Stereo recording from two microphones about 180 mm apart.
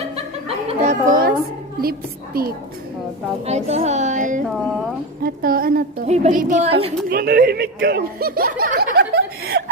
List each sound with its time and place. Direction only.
0.4 s a sound: 35° right (ahead or behind)
1.8 s a woman's voice: 55° right (ahead or behind)
3.4 s a woman's voice: 35° right (ahead or behind); by 5.8 s 55° right (ahead or behind)
6.1 s speech: 45° right (ahead or behind)
6.7 s speech: 30° right (ahead or behind)
7.1 s speech: 55° right (ahead or behind)